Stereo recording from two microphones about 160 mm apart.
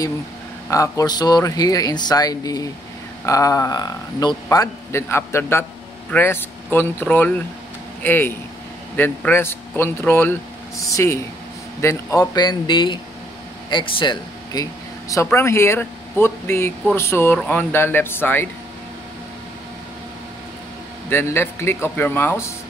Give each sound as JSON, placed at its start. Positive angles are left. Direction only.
{"t": 0.7, "sound": "a man's voice", "side_deg": 20}
{"t": 21.1, "sound": "a man's voice", "side_deg": 15}